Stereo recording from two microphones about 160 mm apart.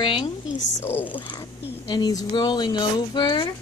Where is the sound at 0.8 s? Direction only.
10° left (ahead or behind).